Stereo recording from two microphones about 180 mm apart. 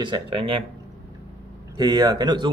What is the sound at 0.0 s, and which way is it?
Speech, 30° right (ahead or behind).